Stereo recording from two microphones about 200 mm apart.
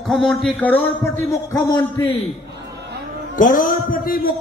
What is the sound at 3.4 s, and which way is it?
Speech, 45° left (ahead or behind).